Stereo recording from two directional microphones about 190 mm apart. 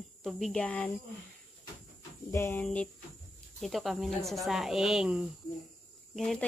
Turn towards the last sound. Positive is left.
turn(degrees=0)  # may be behind; listen again after turning